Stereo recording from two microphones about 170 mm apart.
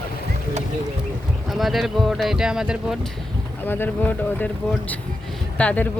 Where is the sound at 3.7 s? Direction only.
10° left (ahead or behind).